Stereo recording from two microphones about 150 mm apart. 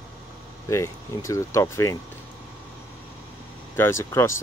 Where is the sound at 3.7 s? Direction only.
15° left (ahead or behind).